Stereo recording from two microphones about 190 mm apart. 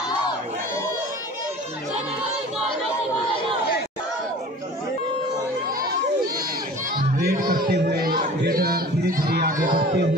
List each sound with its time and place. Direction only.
7.0 s music: 50° right (ahead or behind)